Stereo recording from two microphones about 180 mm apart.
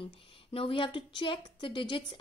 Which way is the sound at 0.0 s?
30° left (ahead or behind).